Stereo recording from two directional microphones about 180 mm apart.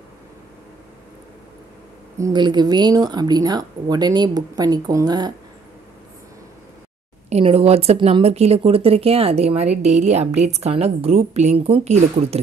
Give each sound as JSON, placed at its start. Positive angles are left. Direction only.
{"t": 2.1, "sound": "speech", "side_deg": -20}
{"t": 7.2, "sound": "speech", "side_deg": -35}